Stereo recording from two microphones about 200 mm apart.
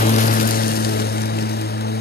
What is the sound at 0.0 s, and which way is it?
Vehicle, 45° left (ahead or behind).